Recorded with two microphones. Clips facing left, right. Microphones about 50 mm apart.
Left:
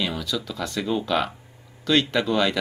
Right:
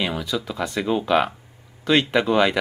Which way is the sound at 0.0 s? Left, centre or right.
Right.